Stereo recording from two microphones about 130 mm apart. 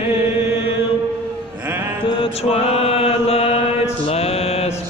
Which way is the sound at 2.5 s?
50° left (ahead or behind).